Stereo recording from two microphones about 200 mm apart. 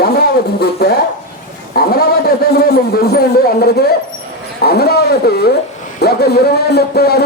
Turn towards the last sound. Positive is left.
turn(degrees=50)  # may be behind; listen again after turning